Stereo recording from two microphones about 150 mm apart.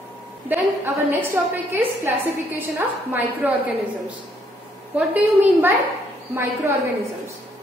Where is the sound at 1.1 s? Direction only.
15° right (ahead or behind).